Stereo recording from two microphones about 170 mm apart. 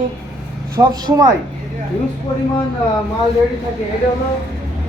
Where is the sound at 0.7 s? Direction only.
20° right (ahead or behind).